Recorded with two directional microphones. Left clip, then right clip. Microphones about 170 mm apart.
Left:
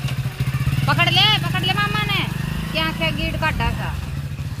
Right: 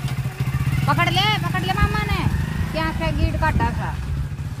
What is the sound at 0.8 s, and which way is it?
Vehicle, 85° right.